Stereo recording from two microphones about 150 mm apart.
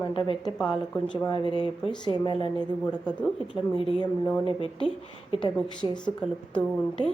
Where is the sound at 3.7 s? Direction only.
35° left (ahead or behind).